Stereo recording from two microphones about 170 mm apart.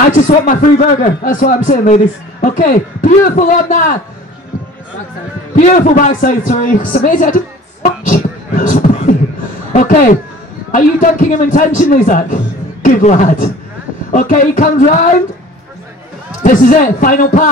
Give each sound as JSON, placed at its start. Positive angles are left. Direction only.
{"t": 0.1, "sound": "speech", "side_deg": 50}
{"t": 5.6, "sound": "speech", "side_deg": 50}
{"t": 7.8, "sound": "beatboxing", "side_deg": 50}
{"t": 9.7, "sound": "speech", "side_deg": 50}
{"t": 16.4, "sound": "speech", "side_deg": 50}